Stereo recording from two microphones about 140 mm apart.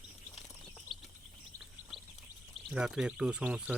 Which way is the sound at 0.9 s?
35° left (ahead or behind).